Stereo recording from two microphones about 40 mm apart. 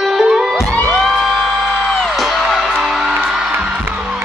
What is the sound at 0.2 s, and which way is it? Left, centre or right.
Music, centre.